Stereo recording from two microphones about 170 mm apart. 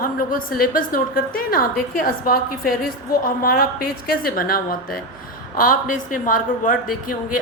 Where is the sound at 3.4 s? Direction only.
60° left (ahead or behind).